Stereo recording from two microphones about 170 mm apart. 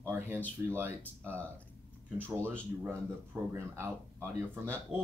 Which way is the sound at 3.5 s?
15° right (ahead or behind).